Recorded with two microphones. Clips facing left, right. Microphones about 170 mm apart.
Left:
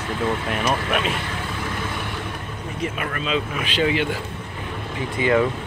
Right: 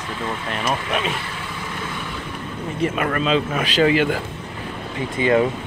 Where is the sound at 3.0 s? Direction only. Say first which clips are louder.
Right 5 dB; 45° right (ahead or behind).